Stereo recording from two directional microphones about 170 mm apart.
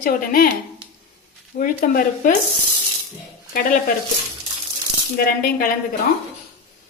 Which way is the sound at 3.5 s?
55° left (ahead or behind).